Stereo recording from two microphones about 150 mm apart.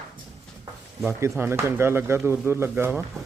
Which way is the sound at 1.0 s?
15° right (ahead or behind).